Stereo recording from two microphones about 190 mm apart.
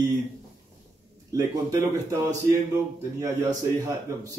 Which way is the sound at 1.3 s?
15° right (ahead or behind).